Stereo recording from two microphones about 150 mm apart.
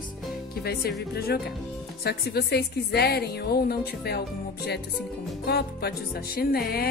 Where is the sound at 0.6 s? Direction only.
90° left.